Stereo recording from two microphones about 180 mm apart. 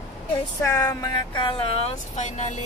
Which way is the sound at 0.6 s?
20° left (ahead or behind).